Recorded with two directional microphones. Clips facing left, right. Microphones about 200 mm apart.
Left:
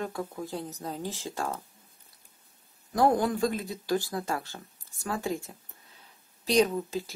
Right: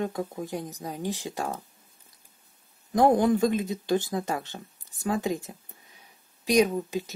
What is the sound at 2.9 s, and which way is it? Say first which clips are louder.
Speech: right 4 dB; 20° right (ahead or behind).